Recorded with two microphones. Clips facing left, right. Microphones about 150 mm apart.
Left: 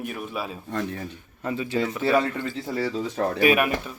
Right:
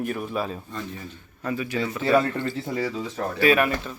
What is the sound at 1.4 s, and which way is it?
Speech, 25° left (ahead or behind).